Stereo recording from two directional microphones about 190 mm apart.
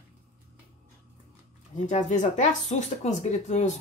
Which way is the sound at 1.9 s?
40° left (ahead or behind).